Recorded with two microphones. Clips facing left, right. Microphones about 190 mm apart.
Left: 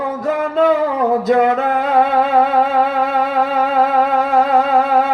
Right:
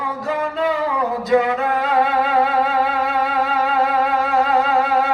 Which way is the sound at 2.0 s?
50° left (ahead or behind).